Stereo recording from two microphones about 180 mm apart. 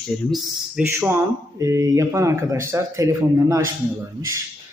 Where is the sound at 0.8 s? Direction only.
10° right (ahead or behind).